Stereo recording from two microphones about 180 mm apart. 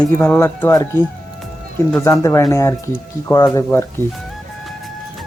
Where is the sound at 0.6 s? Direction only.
20° left (ahead or behind).